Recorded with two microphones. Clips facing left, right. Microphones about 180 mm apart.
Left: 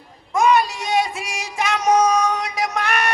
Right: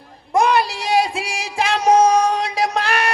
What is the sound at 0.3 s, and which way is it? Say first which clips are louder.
Music: even; 35° right (ahead or behind).